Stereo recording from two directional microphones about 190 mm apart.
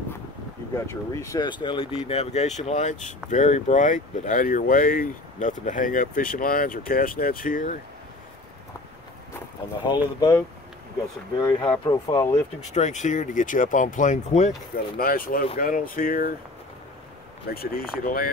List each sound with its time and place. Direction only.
0.7 s speech: 15° left (ahead or behind); by 7.8 s 45° left (ahead or behind)
9.8 s speech: 20° left (ahead or behind)
11.4 s speech: 20° left (ahead or behind)
12.7 s speech: 40° left (ahead or behind)
15.0 s speech: 50° left (ahead or behind)
17.5 s speech: 55° left (ahead or behind)